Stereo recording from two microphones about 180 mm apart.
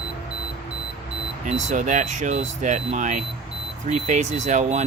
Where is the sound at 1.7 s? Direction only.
45° right (ahead or behind).